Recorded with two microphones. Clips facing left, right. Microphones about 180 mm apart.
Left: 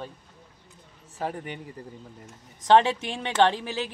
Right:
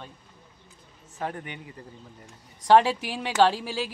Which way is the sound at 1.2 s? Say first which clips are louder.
Left 1 dB; 5° left (ahead or behind).